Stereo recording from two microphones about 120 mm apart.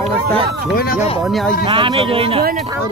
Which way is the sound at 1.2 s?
Centre (ahead or behind).